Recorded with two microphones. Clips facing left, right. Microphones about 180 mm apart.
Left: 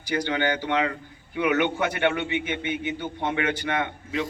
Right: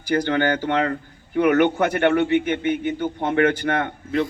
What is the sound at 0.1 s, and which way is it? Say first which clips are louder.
A man's voice: right 5 dB; 45° right (ahead or behind).